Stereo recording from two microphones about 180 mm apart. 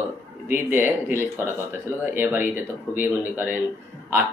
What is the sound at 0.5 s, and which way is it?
Speech, 10° right (ahead or behind).